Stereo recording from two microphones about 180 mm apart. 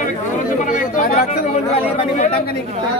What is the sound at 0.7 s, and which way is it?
Chatter, 45° left (ahead or behind).